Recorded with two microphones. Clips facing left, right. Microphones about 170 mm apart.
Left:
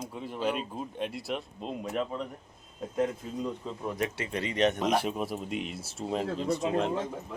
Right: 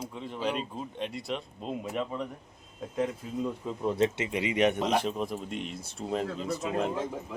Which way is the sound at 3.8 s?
20° right (ahead or behind).